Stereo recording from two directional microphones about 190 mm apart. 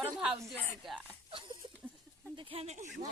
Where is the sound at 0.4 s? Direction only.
10° left (ahead or behind).